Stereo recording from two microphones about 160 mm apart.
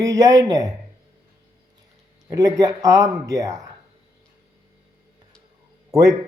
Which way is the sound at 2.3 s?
25° right (ahead or behind).